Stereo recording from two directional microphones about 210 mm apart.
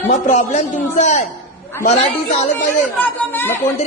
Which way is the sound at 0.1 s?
35° left (ahead or behind).